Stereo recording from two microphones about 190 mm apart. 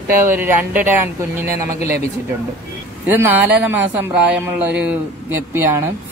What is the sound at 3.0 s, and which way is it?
Speech, 10° right (ahead or behind).